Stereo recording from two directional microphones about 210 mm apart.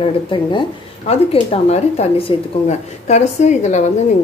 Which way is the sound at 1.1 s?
30° left (ahead or behind).